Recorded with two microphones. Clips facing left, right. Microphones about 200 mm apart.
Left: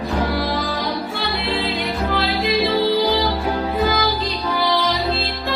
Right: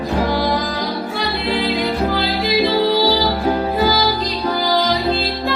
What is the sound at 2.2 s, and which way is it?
Music, 30° right (ahead or behind).